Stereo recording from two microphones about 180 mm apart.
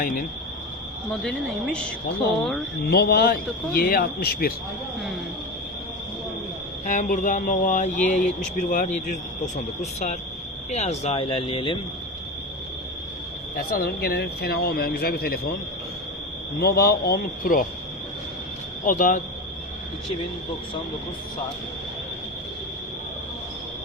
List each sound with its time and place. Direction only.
0.0 s speech: 50° left (ahead or behind)
1.1 s a woman's voice: 5° left (ahead or behind)
2.8 s speech: 60° left (ahead or behind)
6.8 s speech: 45° left (ahead or behind)
10.7 s speech: 40° left (ahead or behind)
13.6 s speech: 55° left (ahead or behind)
16.6 s speech: 60° left (ahead or behind)
18.9 s speech: 45° left (ahead or behind)